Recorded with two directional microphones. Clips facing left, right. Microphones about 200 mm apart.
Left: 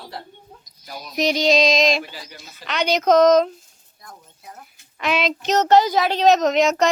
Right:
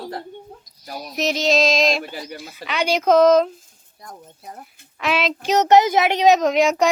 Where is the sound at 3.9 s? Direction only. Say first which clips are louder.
Right 5 dB; 35° right (ahead or behind).